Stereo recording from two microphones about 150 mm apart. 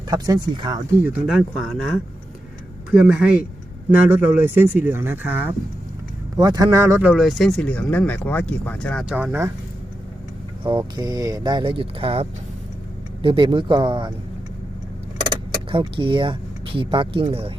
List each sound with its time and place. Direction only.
0.1 s speech: 30° right (ahead or behind)
1.0 s speech: 5° right (ahead or behind)
2.9 s speech: 5° right (ahead or behind)
6.3 s speech: 25° right (ahead or behind)
7.1 s speech: centre (ahead or behind)
9.0 s speech: 5° right (ahead or behind)
10.6 s speech: 30° right (ahead or behind)
15.7 s speech: 35° right (ahead or behind)